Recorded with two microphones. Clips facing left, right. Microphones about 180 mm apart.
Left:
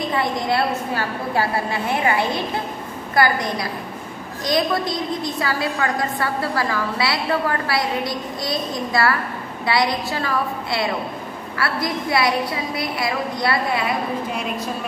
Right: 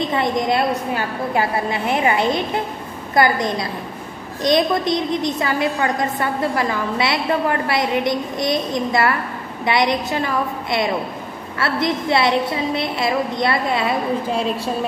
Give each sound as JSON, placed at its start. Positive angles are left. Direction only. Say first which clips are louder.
{"t": 0.1, "sound": "a woman's voice", "louder": "right 1 dB", "side_deg": -20}